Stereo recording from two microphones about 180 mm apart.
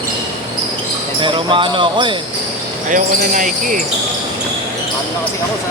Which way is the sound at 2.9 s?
45° right (ahead or behind).